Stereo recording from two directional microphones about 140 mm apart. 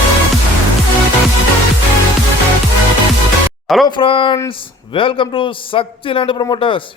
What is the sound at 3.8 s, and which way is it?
A man's voice, 35° left (ahead or behind).